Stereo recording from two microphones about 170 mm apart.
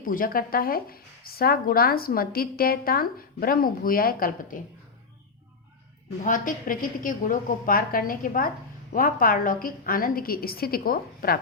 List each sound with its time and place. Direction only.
0.0 s speech: 55° left (ahead or behind)
6.2 s a woman's voice: 50° left (ahead or behind)